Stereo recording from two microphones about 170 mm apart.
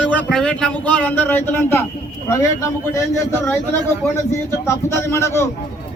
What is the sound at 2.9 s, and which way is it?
Speech, 15° left (ahead or behind).